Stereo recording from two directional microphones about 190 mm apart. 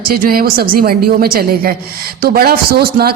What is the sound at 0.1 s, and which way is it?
Speech, 50° right (ahead or behind).